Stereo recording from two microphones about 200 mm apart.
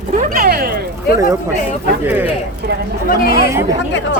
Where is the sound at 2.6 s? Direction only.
45° right (ahead or behind).